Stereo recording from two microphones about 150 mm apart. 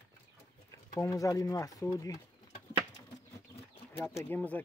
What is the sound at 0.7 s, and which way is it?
Speech, 20° left (ahead or behind).